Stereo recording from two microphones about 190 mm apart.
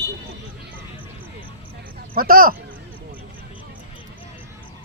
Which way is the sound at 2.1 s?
50° right (ahead or behind).